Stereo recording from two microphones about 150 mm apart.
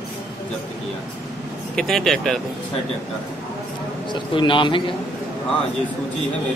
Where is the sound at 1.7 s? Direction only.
Centre (ahead or behind).